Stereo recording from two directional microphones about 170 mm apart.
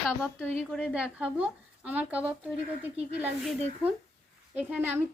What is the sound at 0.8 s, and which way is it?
A woman's voice, 5° right (ahead or behind).